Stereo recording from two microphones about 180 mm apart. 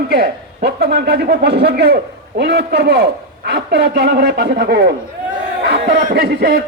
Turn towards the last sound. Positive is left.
turn(degrees=-60)  # may be behind; listen again after turning